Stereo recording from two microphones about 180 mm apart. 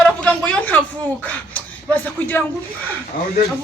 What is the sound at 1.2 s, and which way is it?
Speech, 5° left (ahead or behind).